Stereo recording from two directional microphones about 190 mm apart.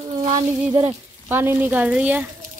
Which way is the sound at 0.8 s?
10° right (ahead or behind).